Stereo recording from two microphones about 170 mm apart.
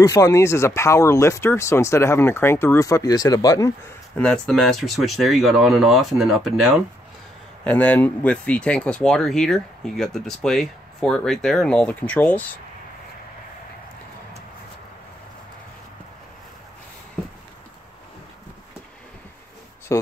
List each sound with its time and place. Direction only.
0.0 s speech: 20° left (ahead or behind)
4.2 s speech: 5° left (ahead or behind)
19.9 s speech: 15° left (ahead or behind)